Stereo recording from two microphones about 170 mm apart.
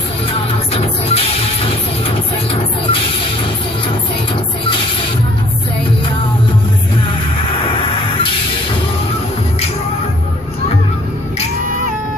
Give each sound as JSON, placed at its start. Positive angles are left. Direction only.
{"t": 0.3, "sound": "music", "side_deg": 35}
{"t": 2.0, "sound": "vehicle", "side_deg": 35}